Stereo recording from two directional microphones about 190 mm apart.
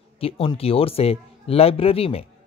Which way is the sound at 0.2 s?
30° left (ahead or behind).